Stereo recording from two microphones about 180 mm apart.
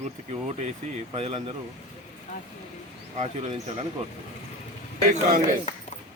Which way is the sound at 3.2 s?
35° right (ahead or behind).